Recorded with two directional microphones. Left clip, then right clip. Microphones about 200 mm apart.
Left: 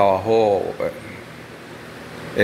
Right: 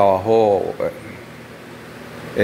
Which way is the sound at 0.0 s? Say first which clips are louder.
Right 2 dB; 20° right (ahead or behind).